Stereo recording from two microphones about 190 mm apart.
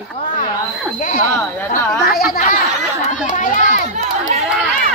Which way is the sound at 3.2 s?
45° left (ahead or behind).